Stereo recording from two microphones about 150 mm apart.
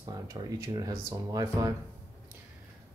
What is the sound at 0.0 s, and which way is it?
Speech, 25° right (ahead or behind).